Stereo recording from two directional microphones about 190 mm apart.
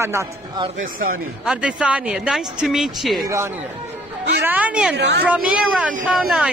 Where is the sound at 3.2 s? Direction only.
15° right (ahead or behind).